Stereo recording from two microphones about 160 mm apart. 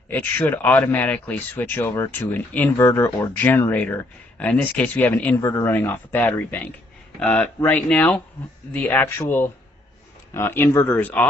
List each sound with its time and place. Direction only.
0.1 s speech: 10° left (ahead or behind)